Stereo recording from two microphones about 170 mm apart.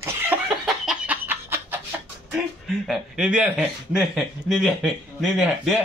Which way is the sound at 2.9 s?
5° right (ahead or behind).